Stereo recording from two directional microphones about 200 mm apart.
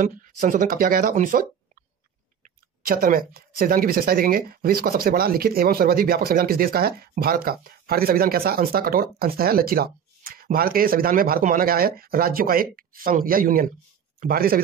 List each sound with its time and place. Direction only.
0.0 s speech: 40° right (ahead or behind)